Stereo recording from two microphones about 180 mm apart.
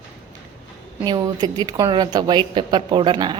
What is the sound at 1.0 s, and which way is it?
A woman's voice, 20° right (ahead or behind).